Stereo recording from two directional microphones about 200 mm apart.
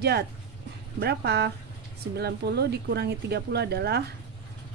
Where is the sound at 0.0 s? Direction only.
55° right (ahead or behind).